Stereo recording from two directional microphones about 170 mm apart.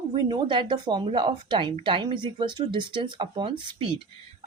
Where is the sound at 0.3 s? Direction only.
30° right (ahead or behind).